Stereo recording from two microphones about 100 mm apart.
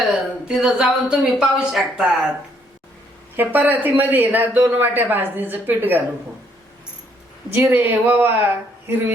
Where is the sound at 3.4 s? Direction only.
20° right (ahead or behind).